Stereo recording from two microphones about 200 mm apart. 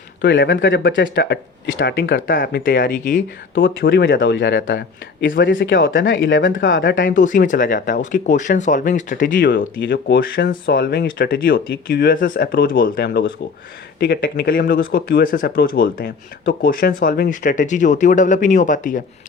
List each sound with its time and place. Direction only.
0.2 s a man's voice: 60° left (ahead or behind); by 3.2 s 45° left (ahead or behind)
3.8 s a man's voice: 60° left (ahead or behind)
7.1 s speech: 40° left (ahead or behind)
9.5 s speech: 60° left (ahead or behind); by 19.0 s 40° left (ahead or behind)